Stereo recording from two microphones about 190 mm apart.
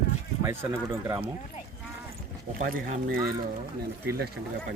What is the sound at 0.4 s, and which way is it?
Speech, 15° right (ahead or behind).